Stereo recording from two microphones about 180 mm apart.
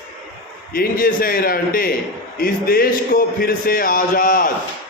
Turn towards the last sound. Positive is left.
turn(degrees=50)  # may be behind; listen again after turning